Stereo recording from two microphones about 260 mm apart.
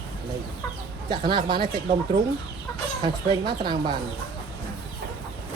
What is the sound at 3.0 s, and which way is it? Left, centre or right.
Speech, centre.